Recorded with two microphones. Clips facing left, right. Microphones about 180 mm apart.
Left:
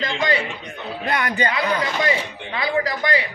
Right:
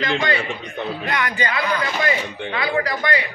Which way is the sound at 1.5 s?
20° left (ahead or behind).